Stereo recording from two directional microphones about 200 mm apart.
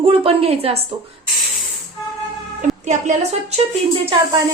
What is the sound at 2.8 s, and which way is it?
Speech, 35° right (ahead or behind).